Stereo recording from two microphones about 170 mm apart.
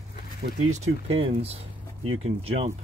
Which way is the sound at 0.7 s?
35° right (ahead or behind).